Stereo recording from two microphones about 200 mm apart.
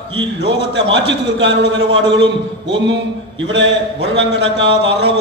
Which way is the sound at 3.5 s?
60° right (ahead or behind).